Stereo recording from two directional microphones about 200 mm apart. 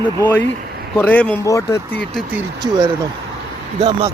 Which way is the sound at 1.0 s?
10° left (ahead or behind).